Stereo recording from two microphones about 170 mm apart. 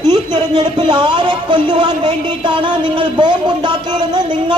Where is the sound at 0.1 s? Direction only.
25° right (ahead or behind).